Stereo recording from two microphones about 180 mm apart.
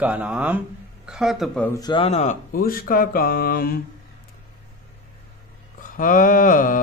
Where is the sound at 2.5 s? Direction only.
55° left (ahead or behind).